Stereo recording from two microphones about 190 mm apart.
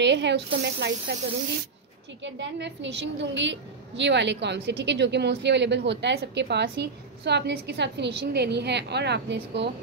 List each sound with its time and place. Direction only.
0.0 s a woman's voice: 65° right (ahead or behind)
2.2 s a woman's voice: 70° right (ahead or behind)